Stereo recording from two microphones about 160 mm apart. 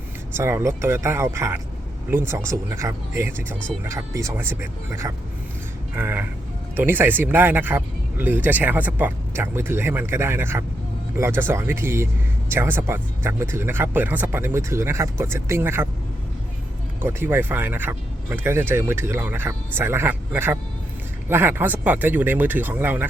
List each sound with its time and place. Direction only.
0.3 s speech: 15° right (ahead or behind)
17.0 s speech: 15° right (ahead or behind)